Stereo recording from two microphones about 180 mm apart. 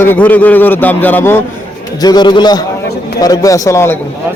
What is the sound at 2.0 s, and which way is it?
A man's voice, 25° left (ahead or behind).